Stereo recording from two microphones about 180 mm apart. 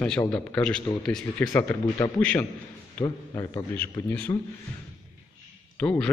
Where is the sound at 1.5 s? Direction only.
15° left (ahead or behind).